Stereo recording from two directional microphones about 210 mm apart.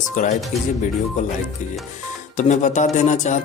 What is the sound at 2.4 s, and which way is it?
Speech, 35° left (ahead or behind).